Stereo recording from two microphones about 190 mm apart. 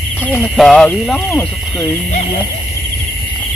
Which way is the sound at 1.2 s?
15° left (ahead or behind).